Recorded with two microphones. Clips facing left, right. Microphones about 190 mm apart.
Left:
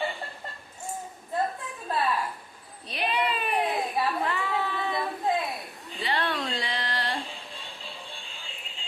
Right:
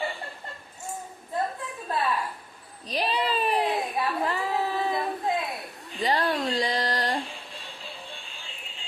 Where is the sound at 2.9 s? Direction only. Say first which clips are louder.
Right 2 dB; 35° right (ahead or behind).